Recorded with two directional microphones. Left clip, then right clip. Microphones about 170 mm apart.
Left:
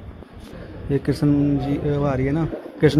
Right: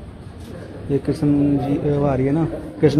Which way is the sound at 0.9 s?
15° left (ahead or behind).